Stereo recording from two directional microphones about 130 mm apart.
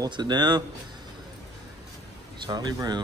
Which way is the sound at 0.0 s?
35° right (ahead or behind).